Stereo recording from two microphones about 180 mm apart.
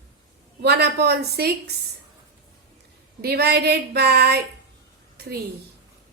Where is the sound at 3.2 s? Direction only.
60° right (ahead or behind).